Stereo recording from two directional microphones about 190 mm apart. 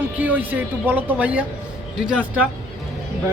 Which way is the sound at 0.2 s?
10° right (ahead or behind).